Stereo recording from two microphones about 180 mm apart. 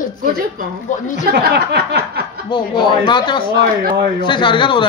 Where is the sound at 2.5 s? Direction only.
25° left (ahead or behind).